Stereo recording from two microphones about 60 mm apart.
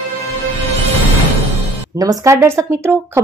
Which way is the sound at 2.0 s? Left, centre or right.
Right.